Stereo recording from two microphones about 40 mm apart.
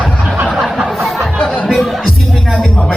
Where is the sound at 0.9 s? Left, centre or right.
Centre.